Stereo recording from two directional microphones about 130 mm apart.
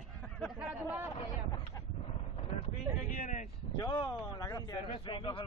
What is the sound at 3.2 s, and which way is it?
Speech, 90° left.